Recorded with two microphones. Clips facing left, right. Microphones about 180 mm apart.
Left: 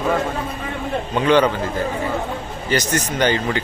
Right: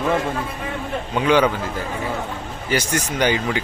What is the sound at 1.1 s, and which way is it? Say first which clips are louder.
Speech: left 1 dB; 5° right (ahead or behind).